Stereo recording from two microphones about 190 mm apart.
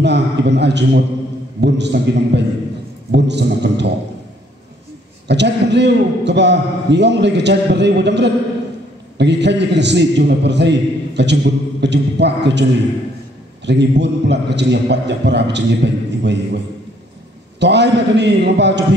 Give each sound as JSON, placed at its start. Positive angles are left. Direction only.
{"t": 0.0, "sound": "a man's voice", "side_deg": -65}
{"t": 5.3, "sound": "a man's voice", "side_deg": -65}
{"t": 13.7, "sound": "a man's voice", "side_deg": -65}
{"t": 17.6, "sound": "a man's voice", "side_deg": -65}